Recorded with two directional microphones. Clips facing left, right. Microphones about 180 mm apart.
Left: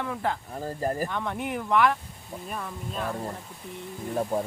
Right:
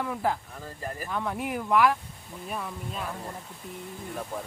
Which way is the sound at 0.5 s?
40° left (ahead or behind).